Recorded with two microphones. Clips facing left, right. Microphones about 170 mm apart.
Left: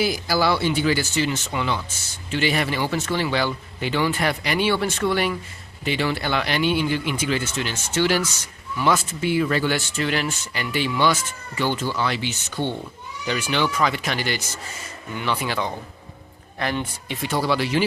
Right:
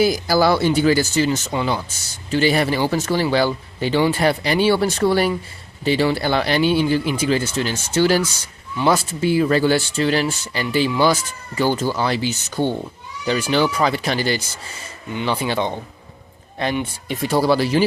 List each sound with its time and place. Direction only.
0.0 s speech: 40° right (ahead or behind); by 17.0 s 25° right (ahead or behind)
17.1 s speech: 40° right (ahead or behind)